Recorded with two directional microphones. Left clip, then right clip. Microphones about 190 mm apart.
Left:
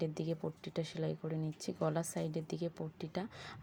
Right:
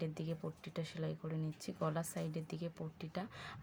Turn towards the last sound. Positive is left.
turn(degrees=15)  # may be behind; listen again after turning